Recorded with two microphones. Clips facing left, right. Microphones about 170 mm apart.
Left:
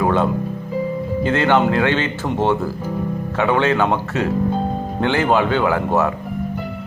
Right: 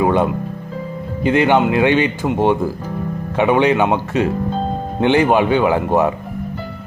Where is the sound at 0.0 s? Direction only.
15° right (ahead or behind).